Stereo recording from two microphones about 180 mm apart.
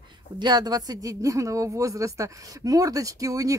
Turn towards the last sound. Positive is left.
turn(degrees=-20)  # may be behind; listen again after turning